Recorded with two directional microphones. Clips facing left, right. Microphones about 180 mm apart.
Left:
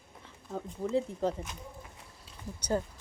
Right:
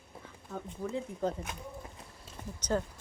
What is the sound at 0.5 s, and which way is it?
Speech, 30° left (ahead or behind).